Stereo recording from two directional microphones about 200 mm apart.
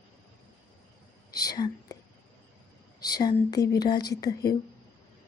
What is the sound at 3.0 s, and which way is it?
Speech, 20° left (ahead or behind).